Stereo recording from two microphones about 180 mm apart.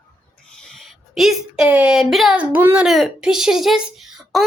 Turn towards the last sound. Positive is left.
turn(degrees=0)  # may be behind; listen again after turning